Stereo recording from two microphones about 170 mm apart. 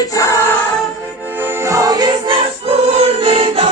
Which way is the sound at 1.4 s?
15° right (ahead or behind).